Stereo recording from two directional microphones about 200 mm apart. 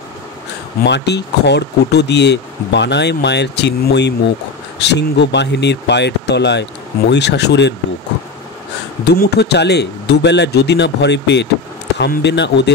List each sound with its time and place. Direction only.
0.8 s speech: 60° left (ahead or behind)
9.1 s speech: 55° left (ahead or behind)